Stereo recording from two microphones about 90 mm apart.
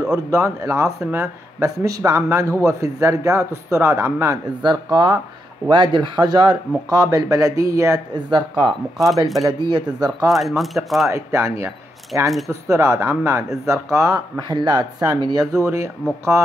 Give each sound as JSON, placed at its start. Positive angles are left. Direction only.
{"t": 0.3, "sound": "speech", "side_deg": -35}
{"t": 4.6, "sound": "speech", "side_deg": -55}
{"t": 6.9, "sound": "speech", "side_deg": -40}
{"t": 8.1, "sound": "speech", "side_deg": -55}
{"t": 8.9, "sound": "speech", "side_deg": 0}
{"t": 9.4, "sound": "speech", "side_deg": -50}
{"t": 10.3, "sound": "speech", "side_deg": 0}
{"t": 11.1, "sound": "speech", "side_deg": -35}
{"t": 14.5, "sound": "speech", "side_deg": -55}